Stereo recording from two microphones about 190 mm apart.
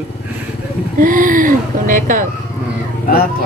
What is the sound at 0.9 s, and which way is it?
Speech, 45° right (ahead or behind).